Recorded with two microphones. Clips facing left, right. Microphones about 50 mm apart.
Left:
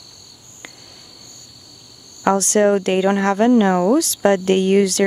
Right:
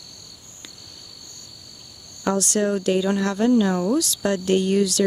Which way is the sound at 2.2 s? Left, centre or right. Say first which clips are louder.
Left 7 dB; left.